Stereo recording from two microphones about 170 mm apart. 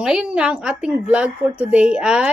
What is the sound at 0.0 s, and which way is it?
Speech, 5° right (ahead or behind).